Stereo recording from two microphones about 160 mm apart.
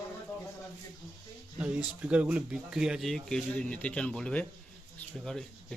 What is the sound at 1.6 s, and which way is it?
Speech, 10° right (ahead or behind).